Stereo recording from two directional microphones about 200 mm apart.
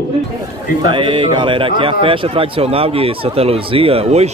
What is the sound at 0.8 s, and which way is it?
A man's voice, 25° right (ahead or behind).